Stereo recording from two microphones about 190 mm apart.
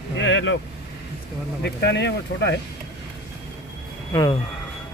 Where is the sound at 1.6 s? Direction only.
65° left (ahead or behind).